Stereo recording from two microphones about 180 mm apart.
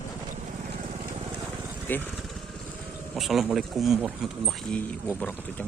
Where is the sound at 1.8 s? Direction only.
10° left (ahead or behind).